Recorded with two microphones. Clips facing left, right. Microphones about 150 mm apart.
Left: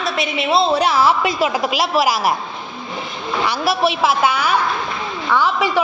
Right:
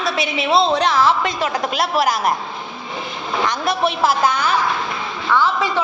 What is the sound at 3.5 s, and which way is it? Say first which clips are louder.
A woman's voice: left 3 dB; 5° left (ahead or behind).